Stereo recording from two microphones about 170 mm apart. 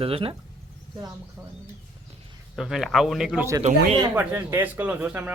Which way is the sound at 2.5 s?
Centre (ahead or behind).